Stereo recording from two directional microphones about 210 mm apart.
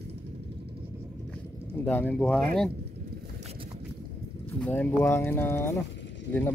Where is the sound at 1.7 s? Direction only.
10° left (ahead or behind).